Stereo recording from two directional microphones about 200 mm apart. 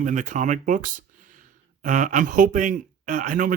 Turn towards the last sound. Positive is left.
turn(degrees=-40)  # may be behind; listen again after turning